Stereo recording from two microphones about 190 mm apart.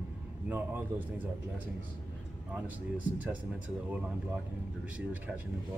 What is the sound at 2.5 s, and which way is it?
Speech, 10° right (ahead or behind).